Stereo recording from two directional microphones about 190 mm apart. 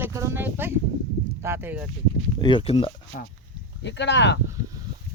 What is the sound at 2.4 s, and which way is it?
Speech, 25° left (ahead or behind).